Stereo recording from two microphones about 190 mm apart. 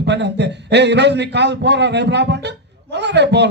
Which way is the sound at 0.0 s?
65° right (ahead or behind).